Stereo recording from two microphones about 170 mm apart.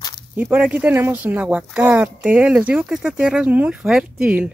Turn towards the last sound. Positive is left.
turn(degrees=-5)  # may be behind; listen again after turning